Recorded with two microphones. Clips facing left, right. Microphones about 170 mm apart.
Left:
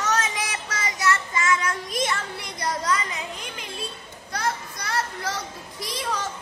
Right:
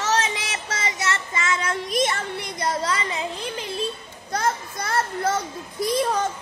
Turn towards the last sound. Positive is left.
turn(degrees=-50)  # may be behind; listen again after turning